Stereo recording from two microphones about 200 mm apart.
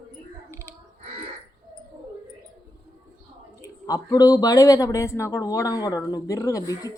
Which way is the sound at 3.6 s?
15° left (ahead or behind).